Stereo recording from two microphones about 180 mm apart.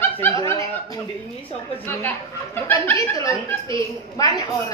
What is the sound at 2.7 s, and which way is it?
Speech, 15° left (ahead or behind).